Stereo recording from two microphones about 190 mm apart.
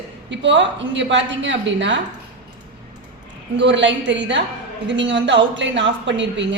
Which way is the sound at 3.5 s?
70° right (ahead or behind).